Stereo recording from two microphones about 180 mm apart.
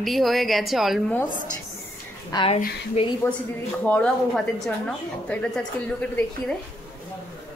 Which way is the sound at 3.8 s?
5° left (ahead or behind).